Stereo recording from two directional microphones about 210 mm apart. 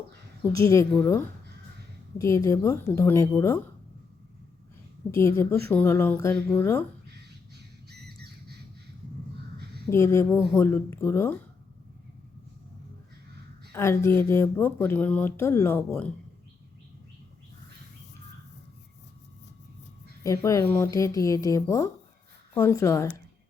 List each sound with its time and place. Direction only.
0.5 s speech: 15° left (ahead or behind)
5.1 s speech: 15° left (ahead or behind)
7.1 s squawk: 50° right (ahead or behind)
9.9 s speech: 15° left (ahead or behind)
13.7 s speech: 10° left (ahead or behind)
20.2 s speech: 15° left (ahead or behind)